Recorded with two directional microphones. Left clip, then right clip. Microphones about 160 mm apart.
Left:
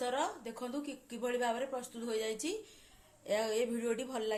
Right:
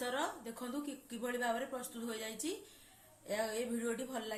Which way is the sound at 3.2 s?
30° left (ahead or behind).